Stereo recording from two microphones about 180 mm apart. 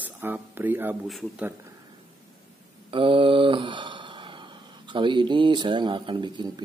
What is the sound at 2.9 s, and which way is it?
A man's voice, 30° right (ahead or behind).